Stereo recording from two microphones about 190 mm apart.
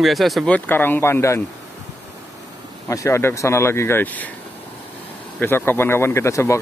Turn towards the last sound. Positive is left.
turn(degrees=15)  # may be behind; listen again after turning